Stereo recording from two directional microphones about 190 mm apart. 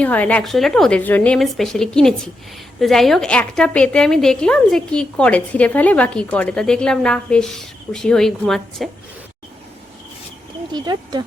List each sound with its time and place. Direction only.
0.0 s a woman's voice: 10° left (ahead or behind)
10.7 s speech: 20° right (ahead or behind)